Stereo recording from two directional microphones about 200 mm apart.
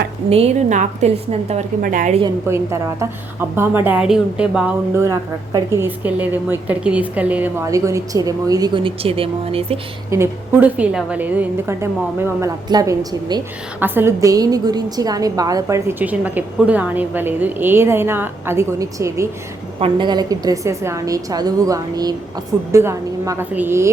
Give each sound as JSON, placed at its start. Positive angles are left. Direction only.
{"t": 0.3, "sound": "a woman's voice", "side_deg": -35}
{"t": 3.5, "sound": "a woman's voice", "side_deg": -10}
{"t": 5.0, "sound": "a woman's voice", "side_deg": -15}
{"t": 10.1, "sound": "a woman's voice", "side_deg": -10}